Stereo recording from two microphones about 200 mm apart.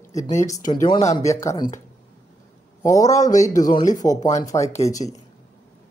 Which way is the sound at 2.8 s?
15° left (ahead or behind).